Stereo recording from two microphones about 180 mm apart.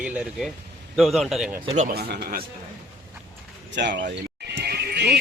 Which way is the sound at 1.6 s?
40° right (ahead or behind).